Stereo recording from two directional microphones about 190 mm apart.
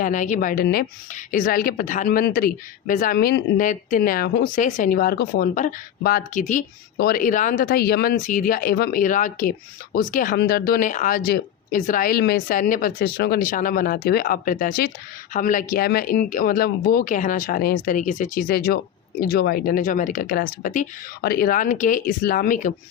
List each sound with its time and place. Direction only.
0.0 s speech: 40° left (ahead or behind)
6.9 s speech: 50° left (ahead or behind)
10.3 s speech: 55° left (ahead or behind)